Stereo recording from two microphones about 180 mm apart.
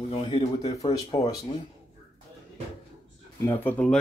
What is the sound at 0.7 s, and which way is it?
Dishes, 20° left (ahead or behind).